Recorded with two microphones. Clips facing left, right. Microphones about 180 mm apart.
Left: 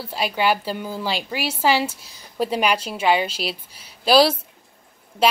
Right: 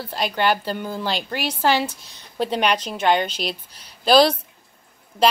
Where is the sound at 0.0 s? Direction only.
5° left (ahead or behind).